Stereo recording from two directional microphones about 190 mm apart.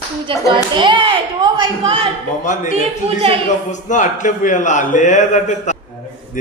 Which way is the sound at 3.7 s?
40° left (ahead or behind).